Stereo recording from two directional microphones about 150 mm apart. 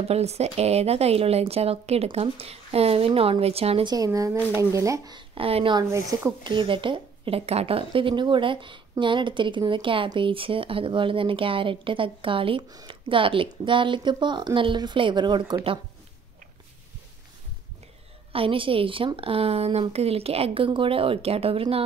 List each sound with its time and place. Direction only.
0.1 s speech: 45° right (ahead or behind)
3.9 s speech: 25° right (ahead or behind)
5.9 s speech: 20° right (ahead or behind)
6.4 s speech: 35° right (ahead or behind)
18.3 s speech: 35° right (ahead or behind)